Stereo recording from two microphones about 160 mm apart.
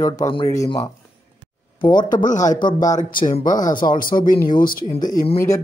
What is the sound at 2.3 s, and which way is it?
Speech, 50° left (ahead or behind).